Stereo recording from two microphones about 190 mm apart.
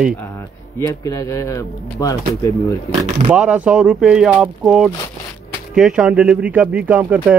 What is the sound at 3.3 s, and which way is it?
Speech, 5° right (ahead or behind).